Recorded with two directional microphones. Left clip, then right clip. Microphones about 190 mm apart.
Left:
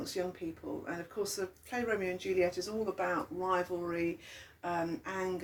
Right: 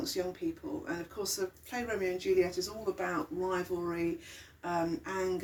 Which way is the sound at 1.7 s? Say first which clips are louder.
Left 1 dB; 35° left (ahead or behind).